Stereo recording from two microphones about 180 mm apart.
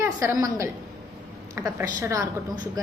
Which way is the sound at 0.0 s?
15° right (ahead or behind).